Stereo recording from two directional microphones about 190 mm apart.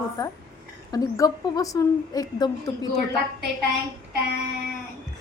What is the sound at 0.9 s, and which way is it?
A woman's voice, 20° left (ahead or behind).